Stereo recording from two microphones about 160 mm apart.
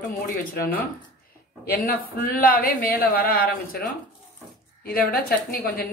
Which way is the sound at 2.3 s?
65° left (ahead or behind).